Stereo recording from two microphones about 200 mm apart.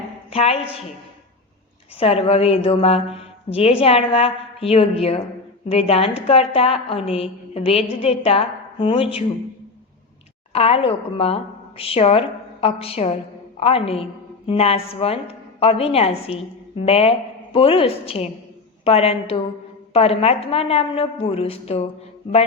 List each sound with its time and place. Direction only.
0.3 s a woman's voice: 30° left (ahead or behind)
2.0 s a woman's voice: 30° left (ahead or behind)
10.5 s a woman's voice: 30° left (ahead or behind)